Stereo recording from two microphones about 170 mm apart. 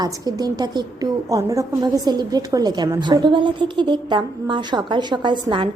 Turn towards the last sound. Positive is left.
turn(degrees=-30)  # may be behind; listen again after turning